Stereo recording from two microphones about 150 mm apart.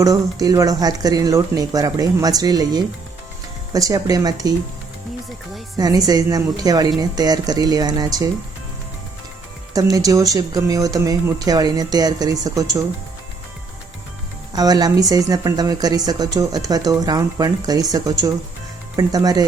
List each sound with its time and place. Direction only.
0.0 s speech: 25° right (ahead or behind)
5.7 s speech: 25° right (ahead or behind)
9.7 s speech: 25° right (ahead or behind)
14.5 s speech: 25° right (ahead or behind)